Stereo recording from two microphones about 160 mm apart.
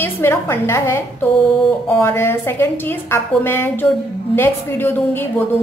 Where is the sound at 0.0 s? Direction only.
15° left (ahead or behind).